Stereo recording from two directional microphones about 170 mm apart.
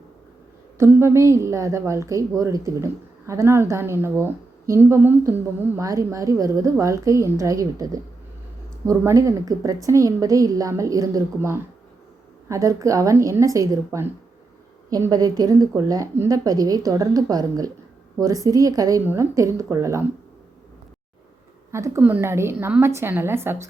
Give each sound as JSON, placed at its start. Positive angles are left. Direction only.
{"t": 0.8, "sound": "a woman's voice", "side_deg": -15}
{"t": 21.7, "sound": "a woman's voice", "side_deg": -15}